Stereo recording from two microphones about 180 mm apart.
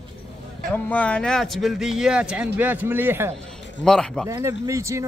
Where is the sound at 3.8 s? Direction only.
5° left (ahead or behind).